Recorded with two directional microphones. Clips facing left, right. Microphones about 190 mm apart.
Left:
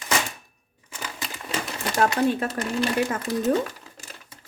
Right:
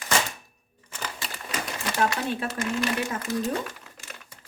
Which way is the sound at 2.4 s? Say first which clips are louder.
Left 2 dB; 35° left (ahead or behind).